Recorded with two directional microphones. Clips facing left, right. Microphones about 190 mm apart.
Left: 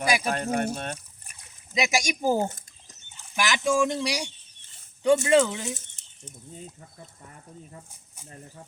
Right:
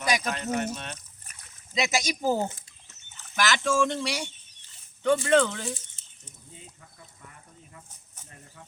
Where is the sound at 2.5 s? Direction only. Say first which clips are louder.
Left 2 dB; 40° left (ahead or behind).